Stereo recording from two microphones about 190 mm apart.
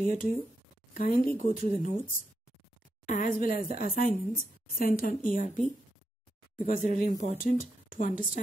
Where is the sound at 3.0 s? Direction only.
45° left (ahead or behind).